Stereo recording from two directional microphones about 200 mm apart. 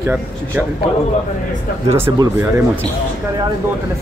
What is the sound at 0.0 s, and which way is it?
Speech, 10° right (ahead or behind).